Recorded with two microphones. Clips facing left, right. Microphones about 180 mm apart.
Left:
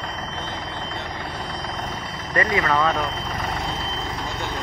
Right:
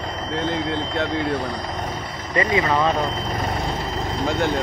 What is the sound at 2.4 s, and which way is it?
Speech, 20° right (ahead or behind).